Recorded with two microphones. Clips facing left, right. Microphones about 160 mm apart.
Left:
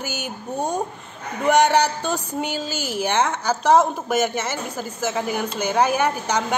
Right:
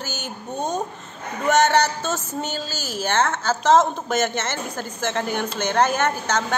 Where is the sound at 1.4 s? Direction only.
15° left (ahead or behind).